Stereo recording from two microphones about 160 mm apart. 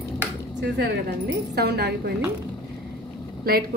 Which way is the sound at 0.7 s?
90° right.